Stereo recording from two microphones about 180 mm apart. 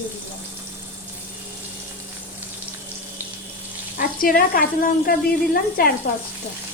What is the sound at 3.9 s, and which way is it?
A woman's voice, 50° left (ahead or behind).